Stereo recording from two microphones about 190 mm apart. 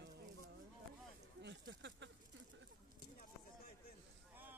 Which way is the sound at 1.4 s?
65° right (ahead or behind).